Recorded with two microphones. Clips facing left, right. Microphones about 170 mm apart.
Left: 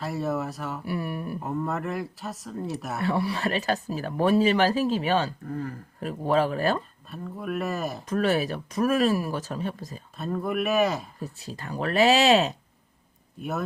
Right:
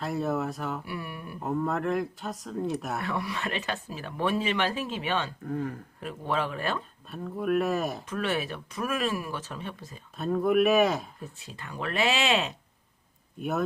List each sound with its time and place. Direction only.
0.0 s speech: centre (ahead or behind)
0.9 s speech: 40° left (ahead or behind)
1.4 s speech: centre (ahead or behind)
3.0 s speech: 30° left (ahead or behind)
5.5 s speech: centre (ahead or behind)
6.0 s speech: 40° left (ahead or behind)
7.1 s speech: centre (ahead or behind)
8.0 s speech: 40° left (ahead or behind)
10.2 s speech: centre (ahead or behind)
11.2 s speech: 40° left (ahead or behind)